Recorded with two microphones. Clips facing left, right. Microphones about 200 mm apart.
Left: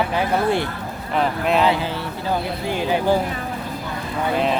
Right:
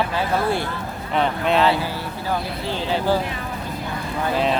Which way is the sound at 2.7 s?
15° left (ahead or behind).